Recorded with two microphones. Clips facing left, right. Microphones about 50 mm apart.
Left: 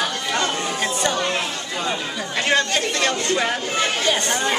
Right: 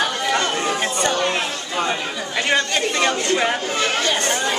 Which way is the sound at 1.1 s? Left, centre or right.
Centre.